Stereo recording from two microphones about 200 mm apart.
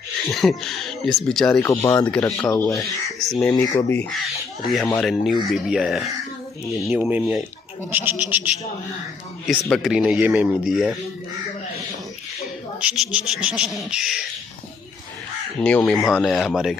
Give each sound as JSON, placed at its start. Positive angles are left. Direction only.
{"t": 0.3, "sound": "speech", "side_deg": 0}
{"t": 1.7, "sound": "speech", "side_deg": 15}
{"t": 3.1, "sound": "speech", "side_deg": 0}
{"t": 9.5, "sound": "speech", "side_deg": 0}
{"t": 12.8, "sound": "speech", "side_deg": -5}
{"t": 15.6, "sound": "speech", "side_deg": 5}